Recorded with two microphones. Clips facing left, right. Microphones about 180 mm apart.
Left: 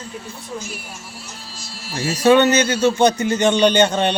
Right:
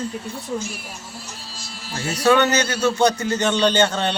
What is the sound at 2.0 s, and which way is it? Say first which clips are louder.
A man's voice: left 4 dB; 20° left (ahead or behind).